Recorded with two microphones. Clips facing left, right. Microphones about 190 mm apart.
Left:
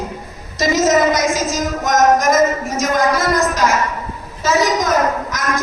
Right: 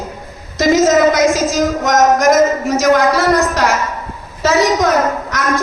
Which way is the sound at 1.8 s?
70° right (ahead or behind).